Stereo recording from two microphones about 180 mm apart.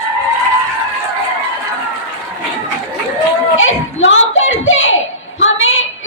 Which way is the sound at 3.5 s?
90° left.